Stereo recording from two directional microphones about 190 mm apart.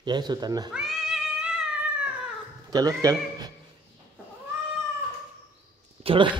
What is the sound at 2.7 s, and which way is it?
Speech, 20° right (ahead or behind).